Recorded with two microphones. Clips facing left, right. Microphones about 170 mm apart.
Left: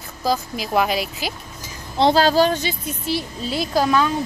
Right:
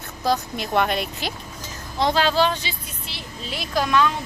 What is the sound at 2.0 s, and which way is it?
A woman's voice, 35° left (ahead or behind).